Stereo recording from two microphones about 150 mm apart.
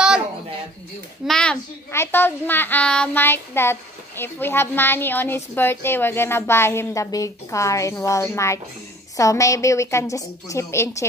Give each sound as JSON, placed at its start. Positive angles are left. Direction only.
{"t": 1.2, "sound": "speech", "side_deg": 5}
{"t": 1.9, "sound": "a woman's voice", "side_deg": 15}